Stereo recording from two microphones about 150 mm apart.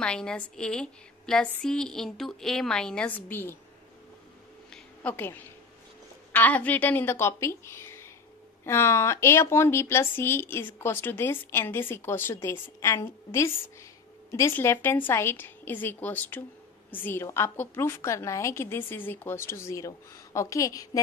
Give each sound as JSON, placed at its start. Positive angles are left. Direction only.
{"t": 0.0, "sound": "a woman's voice", "side_deg": 5}
{"t": 4.6, "sound": "a sound", "side_deg": 10}
{"t": 6.3, "sound": "a woman's voice", "side_deg": 10}